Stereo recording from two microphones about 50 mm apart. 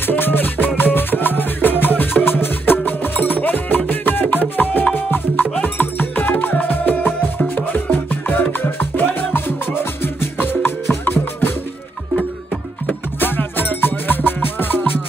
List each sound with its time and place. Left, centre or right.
0.0 s music: left
13.2 s music: left